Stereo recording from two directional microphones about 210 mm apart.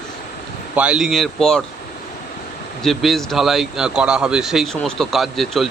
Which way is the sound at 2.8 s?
Centre (ahead or behind).